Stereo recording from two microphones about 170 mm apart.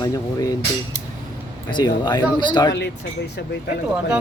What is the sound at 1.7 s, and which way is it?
Speech, 25° left (ahead or behind).